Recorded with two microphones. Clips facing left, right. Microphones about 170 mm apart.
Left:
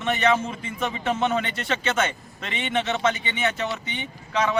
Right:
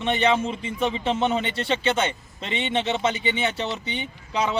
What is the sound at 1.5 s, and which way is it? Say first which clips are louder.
Speech: right 3 dB; 30° right (ahead or behind).